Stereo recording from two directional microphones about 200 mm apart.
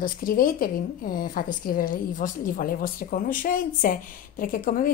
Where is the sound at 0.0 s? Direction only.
45° left (ahead or behind).